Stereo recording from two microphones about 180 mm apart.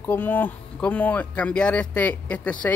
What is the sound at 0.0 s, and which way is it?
Speech, 10° left (ahead or behind).